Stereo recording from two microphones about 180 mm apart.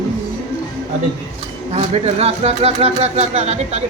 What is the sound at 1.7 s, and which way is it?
Speech, 35° right (ahead or behind).